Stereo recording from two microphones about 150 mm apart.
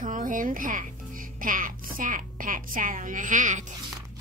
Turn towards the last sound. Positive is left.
turn(degrees=-55)  # may be behind; listen again after turning